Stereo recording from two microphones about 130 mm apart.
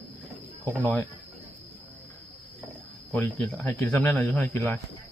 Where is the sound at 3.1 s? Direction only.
10° left (ahead or behind).